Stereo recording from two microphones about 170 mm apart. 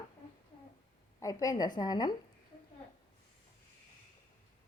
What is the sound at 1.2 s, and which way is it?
Speech, 20° left (ahead or behind).